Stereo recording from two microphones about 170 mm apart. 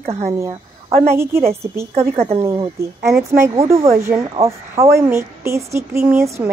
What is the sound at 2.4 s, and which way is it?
A woman's voice, 15° right (ahead or behind).